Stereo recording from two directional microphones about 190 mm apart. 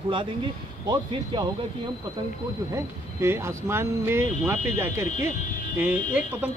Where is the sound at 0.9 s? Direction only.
25° right (ahead or behind).